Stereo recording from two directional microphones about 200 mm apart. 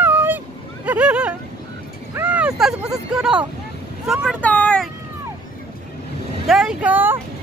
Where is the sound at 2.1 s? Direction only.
10° right (ahead or behind).